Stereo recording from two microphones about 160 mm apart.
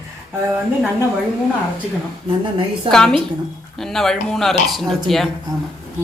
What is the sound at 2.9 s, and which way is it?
A woman's voice, 5° left (ahead or behind).